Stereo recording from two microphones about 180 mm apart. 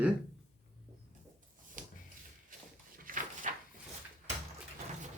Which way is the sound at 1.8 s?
45° right (ahead or behind).